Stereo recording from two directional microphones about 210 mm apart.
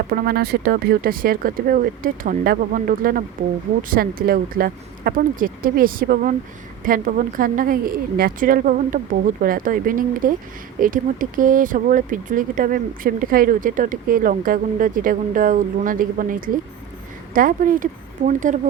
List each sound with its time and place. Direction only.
0.1 s speech: 45° right (ahead or behind)